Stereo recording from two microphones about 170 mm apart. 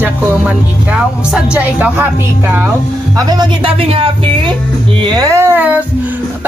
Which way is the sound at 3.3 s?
25° right (ahead or behind).